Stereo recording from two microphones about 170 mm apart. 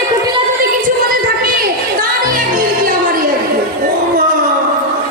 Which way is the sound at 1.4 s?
55° right (ahead or behind).